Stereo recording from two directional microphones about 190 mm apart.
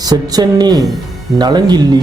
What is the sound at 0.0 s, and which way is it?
Speech, 20° right (ahead or behind).